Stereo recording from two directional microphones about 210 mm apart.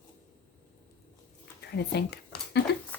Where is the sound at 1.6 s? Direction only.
50° left (ahead or behind).